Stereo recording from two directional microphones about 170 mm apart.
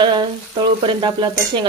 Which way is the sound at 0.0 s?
25° right (ahead or behind).